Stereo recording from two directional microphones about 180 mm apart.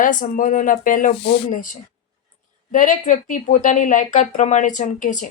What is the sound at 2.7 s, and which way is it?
A woman's voice, 45° left (ahead or behind).